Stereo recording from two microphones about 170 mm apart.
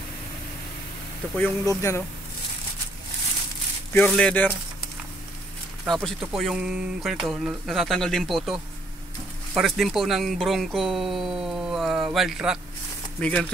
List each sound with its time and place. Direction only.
1.3 s a man's voice: 15° left (ahead or behind)
3.9 s a man's voice: 5° left (ahead or behind)
5.9 s speech: centre (ahead or behind)
9.6 s speech: centre (ahead or behind)